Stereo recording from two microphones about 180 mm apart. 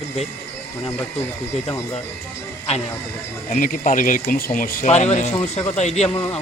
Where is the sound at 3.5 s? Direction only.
50° left (ahead or behind).